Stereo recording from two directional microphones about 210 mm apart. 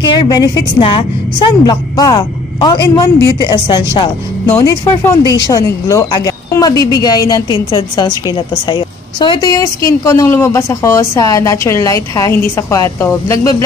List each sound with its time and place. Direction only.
0.0 s a woman's voice: 20° left (ahead or behind)
4.5 s a woman's voice: 10° left (ahead or behind)